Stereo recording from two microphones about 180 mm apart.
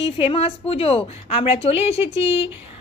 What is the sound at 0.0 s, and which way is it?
A woman's voice, 30° left (ahead or behind).